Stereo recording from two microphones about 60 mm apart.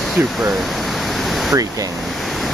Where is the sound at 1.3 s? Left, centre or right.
Centre.